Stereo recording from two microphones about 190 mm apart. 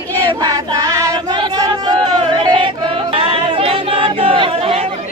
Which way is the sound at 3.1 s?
30° right (ahead or behind).